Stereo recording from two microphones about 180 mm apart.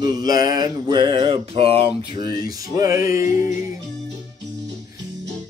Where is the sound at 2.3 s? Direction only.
20° right (ahead or behind).